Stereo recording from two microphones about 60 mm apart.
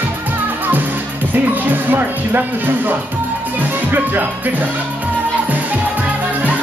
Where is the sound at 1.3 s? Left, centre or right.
Right.